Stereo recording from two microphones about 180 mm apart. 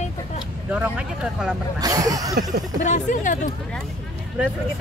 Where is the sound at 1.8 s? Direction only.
20° right (ahead or behind).